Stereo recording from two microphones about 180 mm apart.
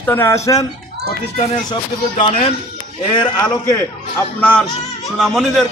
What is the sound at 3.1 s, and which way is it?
Speech, 25° left (ahead or behind).